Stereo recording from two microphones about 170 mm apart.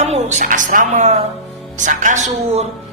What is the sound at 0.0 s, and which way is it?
A woman's voice, 40° right (ahead or behind).